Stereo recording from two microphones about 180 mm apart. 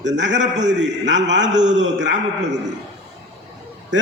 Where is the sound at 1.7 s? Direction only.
90° right.